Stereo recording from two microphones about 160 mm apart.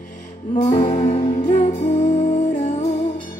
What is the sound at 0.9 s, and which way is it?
Music, 45° left (ahead or behind).